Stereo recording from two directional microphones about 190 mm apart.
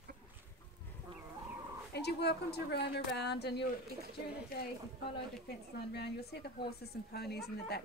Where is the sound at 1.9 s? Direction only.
60° left (ahead or behind).